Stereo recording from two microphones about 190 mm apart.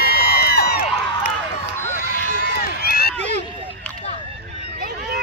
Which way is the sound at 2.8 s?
55° left (ahead or behind).